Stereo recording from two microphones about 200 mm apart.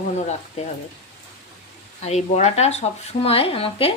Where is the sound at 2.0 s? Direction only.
35° left (ahead or behind).